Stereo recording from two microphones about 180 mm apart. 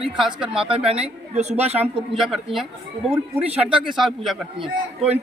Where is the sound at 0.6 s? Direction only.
30° right (ahead or behind).